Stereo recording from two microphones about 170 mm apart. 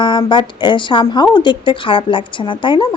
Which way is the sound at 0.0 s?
25° left (ahead or behind).